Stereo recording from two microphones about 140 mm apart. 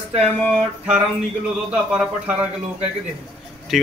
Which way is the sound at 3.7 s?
Centre (ahead or behind).